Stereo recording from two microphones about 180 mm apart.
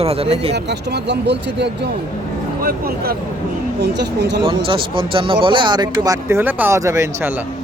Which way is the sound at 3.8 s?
70° right (ahead or behind).